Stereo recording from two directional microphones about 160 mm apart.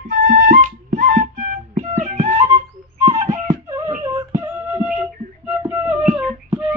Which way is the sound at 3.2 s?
45° right (ahead or behind).